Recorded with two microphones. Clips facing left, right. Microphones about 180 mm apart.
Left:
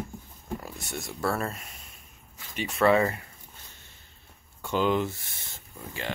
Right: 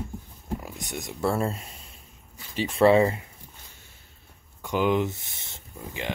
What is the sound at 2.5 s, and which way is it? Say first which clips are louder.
Speech: right 4 dB; 30° right (ahead or behind).